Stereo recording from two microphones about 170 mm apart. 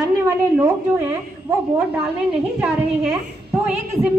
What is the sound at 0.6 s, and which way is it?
Speech, 15° right (ahead or behind).